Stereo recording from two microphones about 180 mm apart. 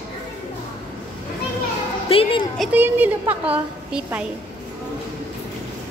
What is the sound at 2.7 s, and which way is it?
A child's voice, 10° right (ahead or behind).